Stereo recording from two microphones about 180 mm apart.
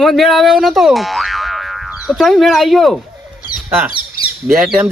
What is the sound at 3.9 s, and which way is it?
Squawk, 30° left (ahead or behind).